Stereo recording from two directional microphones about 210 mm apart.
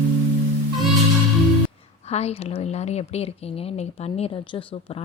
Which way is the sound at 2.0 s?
30° left (ahead or behind).